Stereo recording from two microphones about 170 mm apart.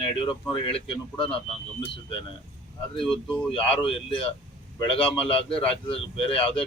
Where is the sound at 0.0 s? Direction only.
30° left (ahead or behind).